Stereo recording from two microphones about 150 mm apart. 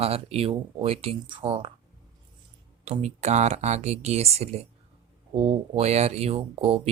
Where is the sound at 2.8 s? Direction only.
45° right (ahead or behind).